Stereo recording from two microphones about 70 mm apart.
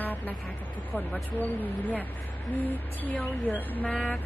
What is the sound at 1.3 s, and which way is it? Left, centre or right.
Speech, left.